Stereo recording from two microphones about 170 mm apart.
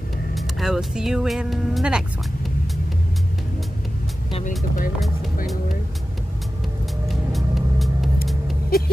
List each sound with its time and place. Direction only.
0.3 s speech: centre (ahead or behind)
4.5 s vehicle: 55° left (ahead or behind)
7.1 s vehicle: centre (ahead or behind)